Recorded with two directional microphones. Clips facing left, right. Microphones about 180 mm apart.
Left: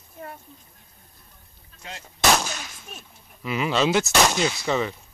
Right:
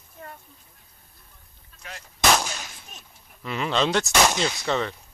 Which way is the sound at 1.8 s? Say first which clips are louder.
Left 2 dB; 20° left (ahead or behind).